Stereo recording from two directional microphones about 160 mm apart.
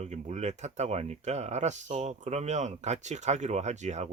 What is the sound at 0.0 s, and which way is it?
Speech, 45° right (ahead or behind).